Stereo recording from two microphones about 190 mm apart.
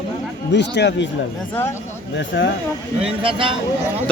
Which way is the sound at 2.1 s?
70° left (ahead or behind).